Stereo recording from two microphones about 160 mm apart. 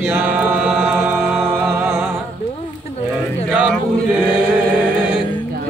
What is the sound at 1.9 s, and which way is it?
Music, 15° right (ahead or behind).